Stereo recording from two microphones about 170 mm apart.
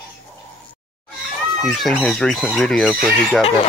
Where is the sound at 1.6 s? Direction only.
Centre (ahead or behind).